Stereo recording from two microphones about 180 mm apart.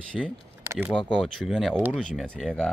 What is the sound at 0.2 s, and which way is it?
Speech, centre (ahead or behind).